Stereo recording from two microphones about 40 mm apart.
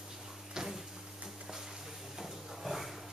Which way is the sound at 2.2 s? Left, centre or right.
Centre.